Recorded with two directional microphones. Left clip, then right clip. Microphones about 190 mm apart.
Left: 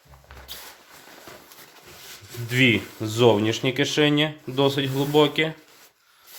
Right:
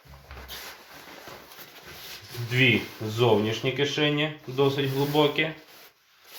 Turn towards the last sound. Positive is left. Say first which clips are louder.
# left 3 dB
turn(degrees=55)  # may be behind; listen again after turning